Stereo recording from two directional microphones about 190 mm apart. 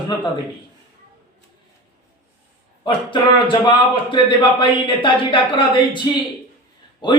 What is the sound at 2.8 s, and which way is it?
A man's voice, 25° left (ahead or behind).